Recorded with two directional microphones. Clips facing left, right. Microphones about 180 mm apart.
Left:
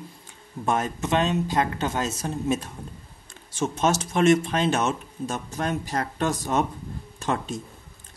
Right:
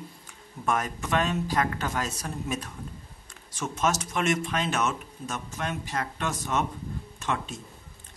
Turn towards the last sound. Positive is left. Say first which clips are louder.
# left 4 dB
turn(degrees=35)  # may be behind; listen again after turning